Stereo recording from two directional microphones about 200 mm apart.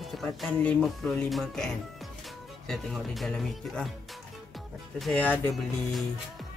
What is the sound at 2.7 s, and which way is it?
Speech, centre (ahead or behind).